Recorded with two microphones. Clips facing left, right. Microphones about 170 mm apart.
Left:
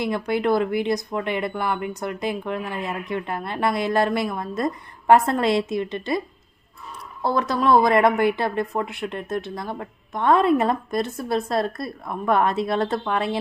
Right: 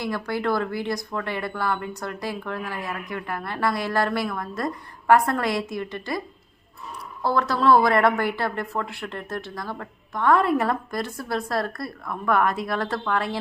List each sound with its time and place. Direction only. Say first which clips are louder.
0.0 s a woman's voice: left 4 dB; 20° left (ahead or behind)